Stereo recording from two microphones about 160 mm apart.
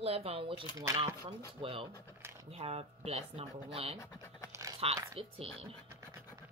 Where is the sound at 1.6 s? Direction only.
35° right (ahead or behind).